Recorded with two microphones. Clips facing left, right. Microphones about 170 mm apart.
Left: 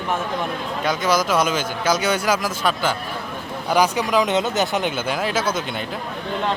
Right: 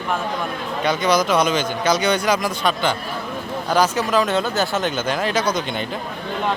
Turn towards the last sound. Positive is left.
turn(degrees=5)  # may be behind; listen again after turning